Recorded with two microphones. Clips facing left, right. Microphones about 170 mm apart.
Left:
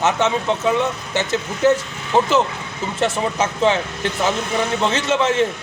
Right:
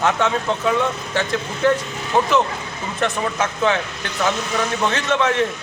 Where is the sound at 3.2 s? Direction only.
25° left (ahead or behind).